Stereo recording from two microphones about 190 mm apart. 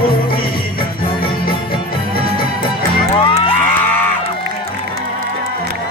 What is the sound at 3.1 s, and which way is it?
Music, 25° left (ahead or behind).